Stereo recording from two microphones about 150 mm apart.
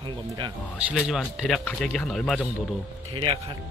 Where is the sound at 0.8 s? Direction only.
5° right (ahead or behind).